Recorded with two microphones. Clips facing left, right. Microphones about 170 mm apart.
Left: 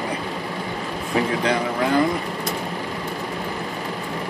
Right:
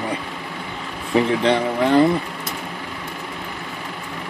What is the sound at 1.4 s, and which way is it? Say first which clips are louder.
Speech: right 3 dB; 30° right (ahead or behind).